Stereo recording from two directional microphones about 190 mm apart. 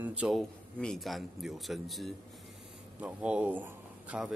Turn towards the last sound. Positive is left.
turn(degrees=-5)  # may be behind; listen again after turning